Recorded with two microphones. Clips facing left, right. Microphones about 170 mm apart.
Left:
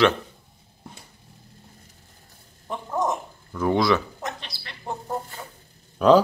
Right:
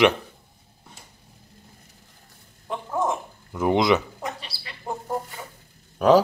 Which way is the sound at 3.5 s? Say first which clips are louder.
Right 1 dB; 20° right (ahead or behind).